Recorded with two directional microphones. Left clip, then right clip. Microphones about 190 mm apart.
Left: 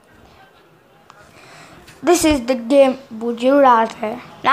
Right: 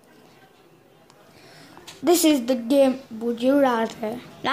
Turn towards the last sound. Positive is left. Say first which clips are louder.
# left 6 dB
turn(degrees=-15)  # may be behind; listen again after turning